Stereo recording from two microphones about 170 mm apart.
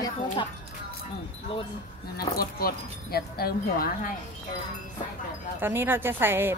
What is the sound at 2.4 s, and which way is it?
Speech, 60° left (ahead or behind).